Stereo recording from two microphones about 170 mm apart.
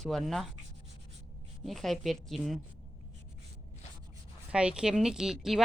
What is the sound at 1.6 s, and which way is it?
Speech, centre (ahead or behind).